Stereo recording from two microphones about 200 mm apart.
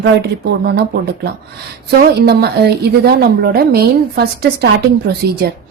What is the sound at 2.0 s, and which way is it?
A woman's voice, 55° right (ahead or behind).